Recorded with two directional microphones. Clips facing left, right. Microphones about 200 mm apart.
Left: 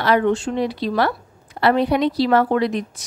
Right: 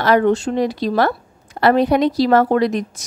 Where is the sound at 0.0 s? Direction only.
40° right (ahead or behind).